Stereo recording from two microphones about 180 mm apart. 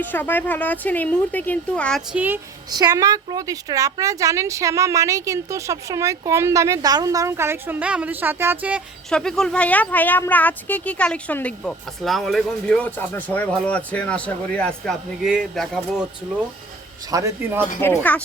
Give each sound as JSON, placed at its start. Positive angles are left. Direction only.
{"t": 0.0, "sound": "speech", "side_deg": 10}
{"t": 2.1, "sound": "speech", "side_deg": -10}
{"t": 2.6, "sound": "speech", "side_deg": -20}
{"t": 9.1, "sound": "speech", "side_deg": 5}
{"t": 17.1, "sound": "speech", "side_deg": -20}
{"t": 17.7, "sound": "speech", "side_deg": 10}